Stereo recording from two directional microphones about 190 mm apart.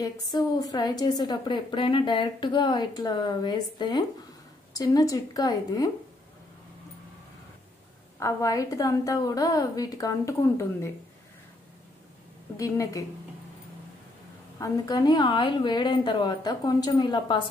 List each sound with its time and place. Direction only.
0.0 s a woman's voice: 20° left (ahead or behind)
8.2 s a woman's voice: 15° left (ahead or behind)
12.5 s a woman's voice: 15° left (ahead or behind)
14.6 s a woman's voice: 20° left (ahead or behind)